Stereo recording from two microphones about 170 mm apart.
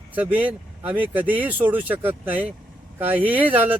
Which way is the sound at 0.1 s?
10° right (ahead or behind).